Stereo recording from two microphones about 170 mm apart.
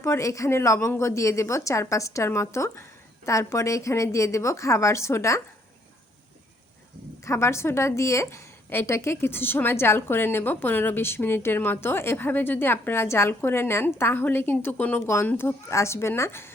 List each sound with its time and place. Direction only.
0.0 s a woman's voice: 15° left (ahead or behind)
7.3 s a woman's voice: 15° left (ahead or behind)